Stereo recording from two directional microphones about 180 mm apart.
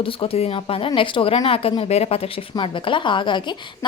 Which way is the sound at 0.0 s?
30° left (ahead or behind).